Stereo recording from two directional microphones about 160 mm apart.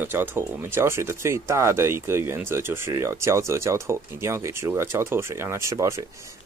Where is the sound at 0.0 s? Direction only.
15° right (ahead or behind).